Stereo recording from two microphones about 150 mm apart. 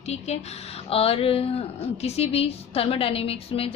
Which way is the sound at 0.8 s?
40° left (ahead or behind).